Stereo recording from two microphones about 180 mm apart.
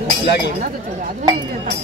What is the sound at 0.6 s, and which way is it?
Speech, 45° right (ahead or behind).